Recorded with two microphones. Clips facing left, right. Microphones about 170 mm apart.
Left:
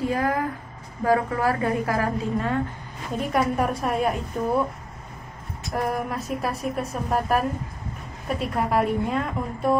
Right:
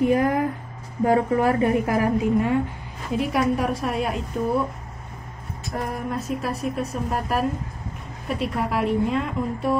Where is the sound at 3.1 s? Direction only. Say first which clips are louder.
Right 2 dB; centre (ahead or behind).